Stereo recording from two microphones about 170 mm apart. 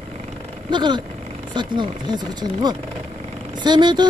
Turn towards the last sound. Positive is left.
turn(degrees=-25)  # may be behind; listen again after turning